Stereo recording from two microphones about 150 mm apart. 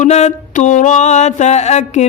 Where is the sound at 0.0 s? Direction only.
50° left (ahead or behind).